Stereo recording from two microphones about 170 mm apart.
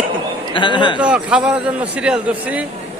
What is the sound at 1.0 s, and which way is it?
Speech, 5° right (ahead or behind).